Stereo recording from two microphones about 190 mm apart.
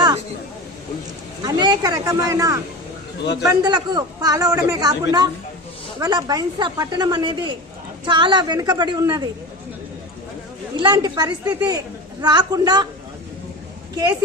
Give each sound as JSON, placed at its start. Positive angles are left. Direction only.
{"t": 1.4, "sound": "speech", "side_deg": -25}
{"t": 3.6, "sound": "speech", "side_deg": -20}
{"t": 6.0, "sound": "speech", "side_deg": -20}
{"t": 10.8, "sound": "speech", "side_deg": -20}
{"t": 13.9, "sound": "speech", "side_deg": -20}